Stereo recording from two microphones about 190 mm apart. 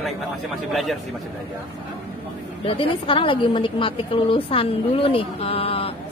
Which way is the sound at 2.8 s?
30° left (ahead or behind).